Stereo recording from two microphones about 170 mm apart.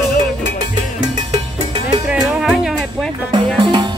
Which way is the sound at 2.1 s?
5° right (ahead or behind).